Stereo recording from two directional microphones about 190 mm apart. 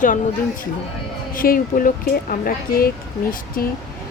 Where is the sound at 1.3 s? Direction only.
45° left (ahead or behind).